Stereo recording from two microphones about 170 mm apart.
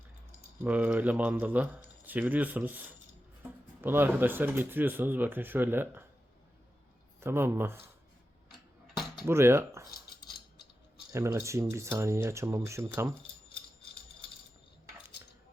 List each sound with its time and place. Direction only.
0.6 s speech: 10° right (ahead or behind)
7.2 s speech: 15° right (ahead or behind)
9.2 s speech: 15° right (ahead or behind)
11.1 s speech: 15° right (ahead or behind)